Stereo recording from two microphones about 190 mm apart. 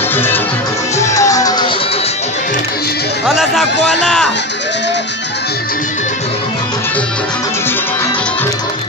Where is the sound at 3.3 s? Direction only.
Centre (ahead or behind).